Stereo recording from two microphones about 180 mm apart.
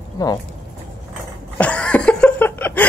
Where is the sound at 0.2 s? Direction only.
20° left (ahead or behind).